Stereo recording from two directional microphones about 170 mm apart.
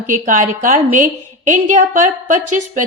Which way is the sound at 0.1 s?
50° right (ahead or behind).